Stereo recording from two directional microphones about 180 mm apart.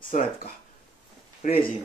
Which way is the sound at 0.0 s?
50° left (ahead or behind).